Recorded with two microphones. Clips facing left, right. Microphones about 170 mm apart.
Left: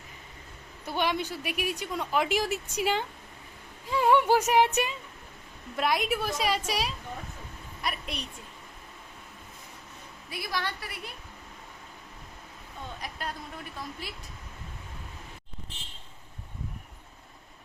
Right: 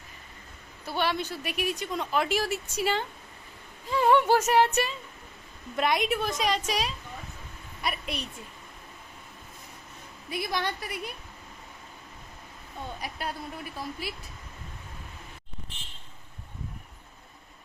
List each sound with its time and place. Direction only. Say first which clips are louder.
0.9 s speech: even; 15° left (ahead or behind)
5.7 s a woman's voice: right 1 dB; centre (ahead or behind)
10.2 s a woman's voice: right 3 dB; 20° right (ahead or behind)
13.0 s a woman's voice: right 2 dB; 10° right (ahead or behind)